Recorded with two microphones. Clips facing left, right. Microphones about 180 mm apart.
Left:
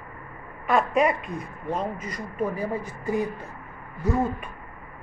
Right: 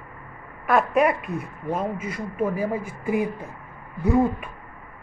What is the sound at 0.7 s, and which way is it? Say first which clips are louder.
Speech: right 2 dB; 5° right (ahead or behind).